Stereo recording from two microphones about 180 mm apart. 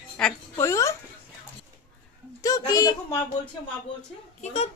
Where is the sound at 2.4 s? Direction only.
20° left (ahead or behind).